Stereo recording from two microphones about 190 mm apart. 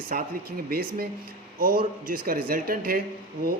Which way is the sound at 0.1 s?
55° right (ahead or behind).